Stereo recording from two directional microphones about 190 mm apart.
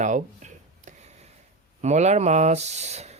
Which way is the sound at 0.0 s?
40° right (ahead or behind).